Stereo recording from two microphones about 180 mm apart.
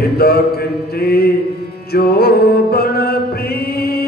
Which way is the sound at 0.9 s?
60° left (ahead or behind).